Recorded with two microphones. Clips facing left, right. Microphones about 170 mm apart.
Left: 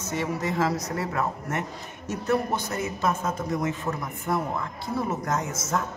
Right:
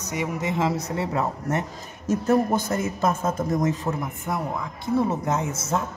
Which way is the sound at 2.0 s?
40° right (ahead or behind).